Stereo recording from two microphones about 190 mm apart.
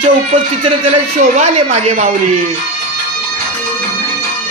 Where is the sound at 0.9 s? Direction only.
35° right (ahead or behind).